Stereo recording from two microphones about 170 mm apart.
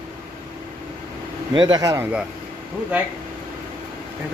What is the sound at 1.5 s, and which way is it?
Speech, 25° right (ahead or behind).